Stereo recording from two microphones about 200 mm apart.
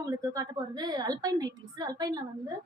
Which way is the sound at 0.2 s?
20° right (ahead or behind).